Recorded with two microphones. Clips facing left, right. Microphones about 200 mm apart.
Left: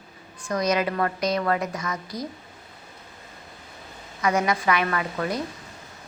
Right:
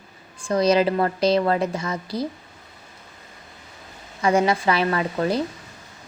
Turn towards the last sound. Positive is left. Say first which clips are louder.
# right 5 dB
turn(degrees=-30)  # may be behind; listen again after turning